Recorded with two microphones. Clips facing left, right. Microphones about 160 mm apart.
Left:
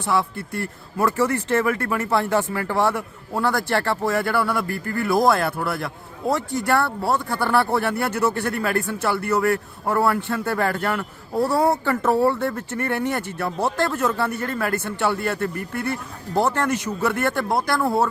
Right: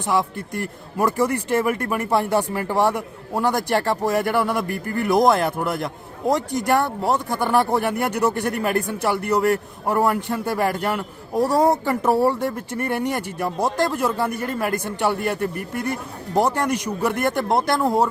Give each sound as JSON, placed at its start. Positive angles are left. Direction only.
{"t": 0.0, "sound": "a man's voice", "side_deg": -15}